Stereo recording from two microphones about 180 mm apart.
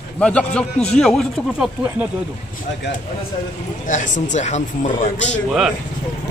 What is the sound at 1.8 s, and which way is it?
Speech, 10° right (ahead or behind).